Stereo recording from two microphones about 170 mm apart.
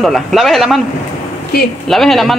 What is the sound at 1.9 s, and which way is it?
Speech, centre (ahead or behind).